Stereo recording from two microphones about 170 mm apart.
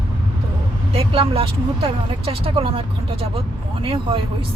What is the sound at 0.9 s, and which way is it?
Speech, 35° right (ahead or behind).